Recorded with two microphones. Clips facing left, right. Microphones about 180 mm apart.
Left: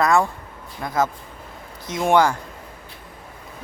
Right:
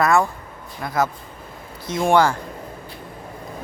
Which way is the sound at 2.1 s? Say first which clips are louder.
Even; 15° left (ahead or behind).